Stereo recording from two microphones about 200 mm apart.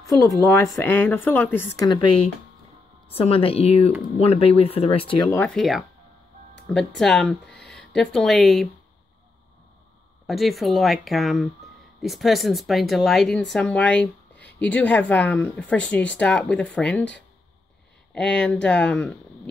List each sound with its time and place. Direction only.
0.0 s speech: 15° left (ahead or behind)
3.1 s speech: 30° left (ahead or behind)
5.3 s speech: 5° left (ahead or behind)
10.2 s speech: centre (ahead or behind)